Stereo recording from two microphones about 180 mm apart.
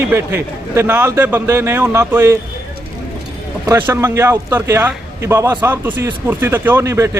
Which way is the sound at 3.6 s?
15° right (ahead or behind).